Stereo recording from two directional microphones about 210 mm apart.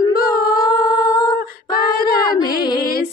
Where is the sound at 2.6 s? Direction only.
20° left (ahead or behind).